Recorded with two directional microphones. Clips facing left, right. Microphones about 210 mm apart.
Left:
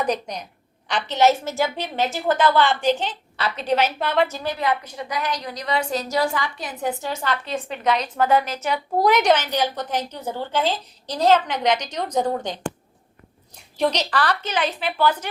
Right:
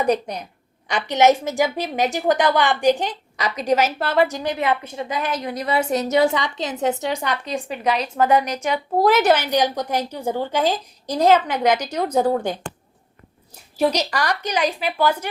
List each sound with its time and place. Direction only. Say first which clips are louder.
0.0 s a woman's voice: right 4 dB; 10° right (ahead or behind)
4.3 s a woman's voice: right 2 dB; 15° right (ahead or behind)
8.7 s a woman's voice: right 2 dB; 5° right (ahead or behind)
13.7 s a woman's voice: right 2 dB; 10° right (ahead or behind)